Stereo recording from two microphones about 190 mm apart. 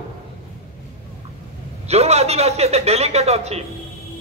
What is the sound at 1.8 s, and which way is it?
A man's voice, 35° right (ahead or behind).